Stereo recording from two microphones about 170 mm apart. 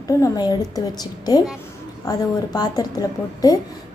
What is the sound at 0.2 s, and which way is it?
Speech, 25° left (ahead or behind).